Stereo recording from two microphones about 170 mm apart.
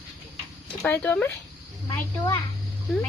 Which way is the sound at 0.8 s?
10° left (ahead or behind).